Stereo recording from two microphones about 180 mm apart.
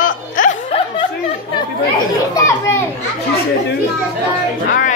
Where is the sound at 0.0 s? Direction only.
45° left (ahead or behind).